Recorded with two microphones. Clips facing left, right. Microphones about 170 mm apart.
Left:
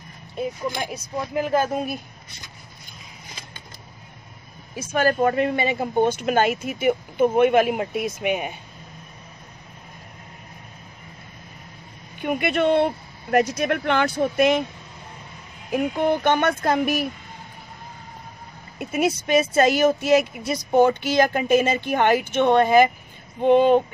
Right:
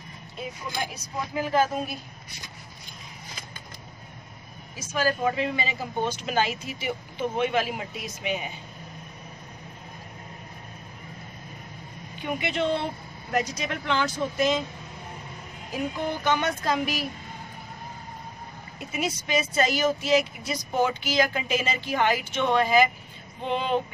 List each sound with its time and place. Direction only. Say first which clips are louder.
4.7 s speech: left 6 dB; 55° left (ahead or behind)
12.2 s speech: left 6 dB; 55° left (ahead or behind)
15.7 s speech: left 8 dB; 60° left (ahead or behind)
18.8 s speech: left 8 dB; 55° left (ahead or behind)